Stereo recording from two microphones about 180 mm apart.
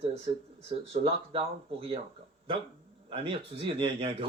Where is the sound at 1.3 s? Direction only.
30° right (ahead or behind).